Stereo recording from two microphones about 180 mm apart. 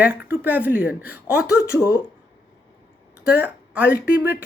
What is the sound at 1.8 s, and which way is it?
Speech, 15° left (ahead or behind).